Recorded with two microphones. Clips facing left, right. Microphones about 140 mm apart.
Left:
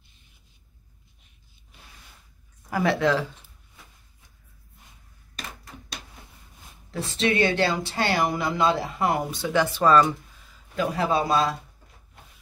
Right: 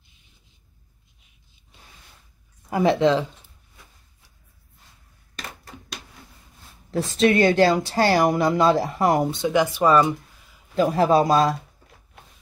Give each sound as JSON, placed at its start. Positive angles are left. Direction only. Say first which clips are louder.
{"t": 2.7, "sound": "speech", "louder": "right 4 dB", "side_deg": -20}
{"t": 6.9, "sound": "speech", "louder": "right 6 dB", "side_deg": -40}
{"t": 9.3, "sound": "speech", "louder": "right 3 dB", "side_deg": -15}
{"t": 10.8, "sound": "speech", "louder": "right 6 dB", "side_deg": -35}